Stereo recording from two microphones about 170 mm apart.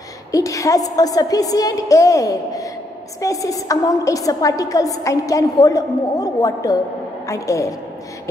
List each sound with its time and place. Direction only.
0.3 s a woman's voice: 20° left (ahead or behind)